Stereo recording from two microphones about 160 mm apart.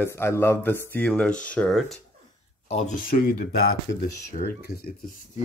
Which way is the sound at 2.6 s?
45° left (ahead or behind).